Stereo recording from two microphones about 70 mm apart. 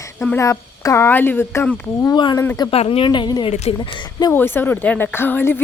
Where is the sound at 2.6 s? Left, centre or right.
Left.